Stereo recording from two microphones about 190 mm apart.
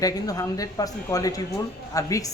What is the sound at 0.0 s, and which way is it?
A man's voice, 20° left (ahead or behind).